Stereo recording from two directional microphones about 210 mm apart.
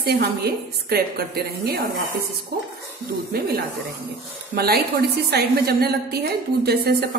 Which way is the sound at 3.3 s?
45° right (ahead or behind).